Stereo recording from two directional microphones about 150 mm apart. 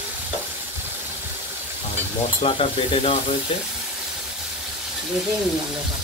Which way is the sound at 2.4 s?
40° left (ahead or behind).